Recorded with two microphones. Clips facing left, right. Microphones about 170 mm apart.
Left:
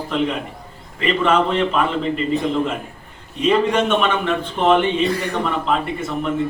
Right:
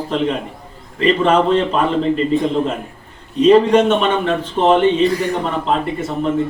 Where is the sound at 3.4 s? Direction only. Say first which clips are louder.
Right 7 dB; 35° right (ahead or behind).